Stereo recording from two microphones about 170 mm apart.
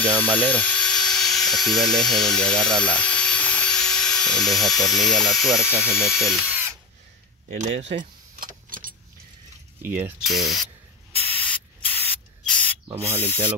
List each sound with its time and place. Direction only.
0.4 s speech: 10° left (ahead or behind)
7.4 s speech: 45° right (ahead or behind)
7.9 s keys jangling: 50° right (ahead or behind)
9.8 s speech: 10° right (ahead or behind)
10.2 s speech: centre (ahead or behind)
11.1 s spray: 10° left (ahead or behind)
13.2 s speech: 15° left (ahead or behind)